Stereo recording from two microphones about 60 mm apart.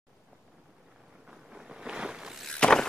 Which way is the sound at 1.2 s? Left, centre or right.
Centre.